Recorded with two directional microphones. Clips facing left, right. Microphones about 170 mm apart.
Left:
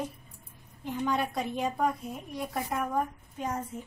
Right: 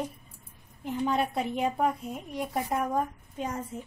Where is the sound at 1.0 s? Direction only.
25° right (ahead or behind).